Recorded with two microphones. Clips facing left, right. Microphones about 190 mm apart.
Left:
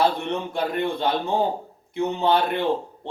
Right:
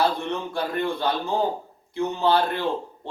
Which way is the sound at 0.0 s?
25° left (ahead or behind).